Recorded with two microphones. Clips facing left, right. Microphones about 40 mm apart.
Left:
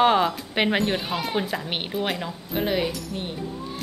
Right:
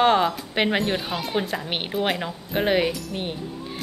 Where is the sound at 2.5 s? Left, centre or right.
Right.